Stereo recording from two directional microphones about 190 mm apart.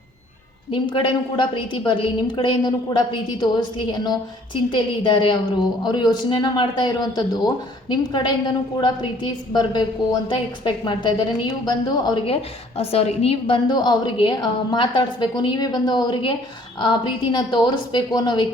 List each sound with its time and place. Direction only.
0.7 s a man's voice: 25° left (ahead or behind)